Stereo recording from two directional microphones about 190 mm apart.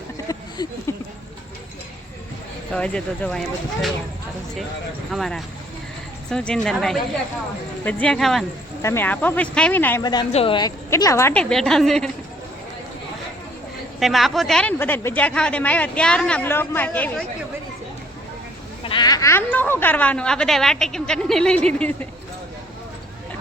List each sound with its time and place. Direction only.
0.3 s a sound: 20° left (ahead or behind)
2.7 s a woman's voice: 5° left (ahead or behind)
5.1 s a woman's voice: centre (ahead or behind)
8.8 s speech: 15° left (ahead or behind)
10.0 s speech: 20° left (ahead or behind)
10.8 s a woman's voice: 15° left (ahead or behind)
14.0 s speech: centre (ahead or behind)
18.8 s speech: 25° left (ahead or behind); by 21.9 s 5° left (ahead or behind)